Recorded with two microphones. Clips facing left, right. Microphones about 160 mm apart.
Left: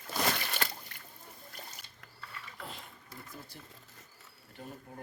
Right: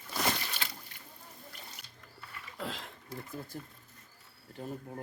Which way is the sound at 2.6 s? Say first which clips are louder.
Right 8 dB; 90° right.